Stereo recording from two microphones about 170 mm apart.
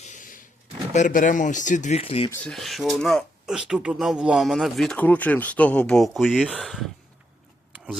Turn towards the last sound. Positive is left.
turn(degrees=0)  # may be behind; listen again after turning